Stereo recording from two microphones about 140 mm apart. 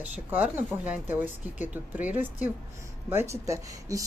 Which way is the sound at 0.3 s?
10° right (ahead or behind).